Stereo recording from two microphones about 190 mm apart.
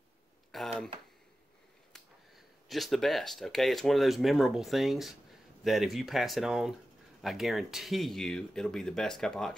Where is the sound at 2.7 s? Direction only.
Centre (ahead or behind).